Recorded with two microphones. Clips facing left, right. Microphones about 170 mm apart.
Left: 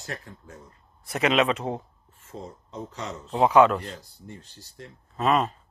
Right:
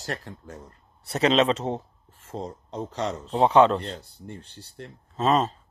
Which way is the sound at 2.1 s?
75° right (ahead or behind).